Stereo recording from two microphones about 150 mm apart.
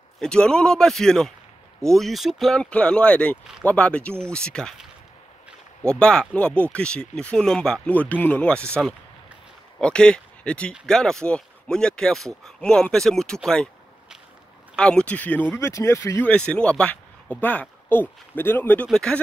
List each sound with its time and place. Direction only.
0.2 s speech: 5° left (ahead or behind)
5.9 s speech: 5° left (ahead or behind)
9.8 s speech: 5° left (ahead or behind)
14.8 s speech: 5° left (ahead or behind)
16.3 s speech: 5° left (ahead or behind)